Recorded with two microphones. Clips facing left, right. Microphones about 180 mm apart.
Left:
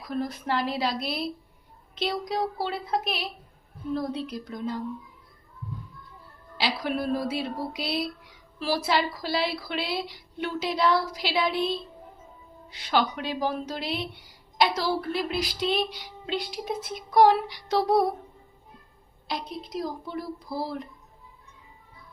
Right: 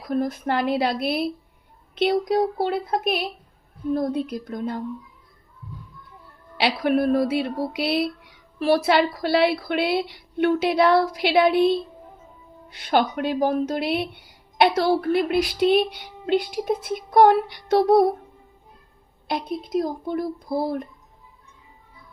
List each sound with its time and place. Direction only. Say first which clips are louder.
0.1 s a woman's voice: right 5 dB; 50° right (ahead or behind)
6.6 s a woman's voice: right 8 dB; 60° right (ahead or behind)
19.3 s speech: right 8 dB; 55° right (ahead or behind)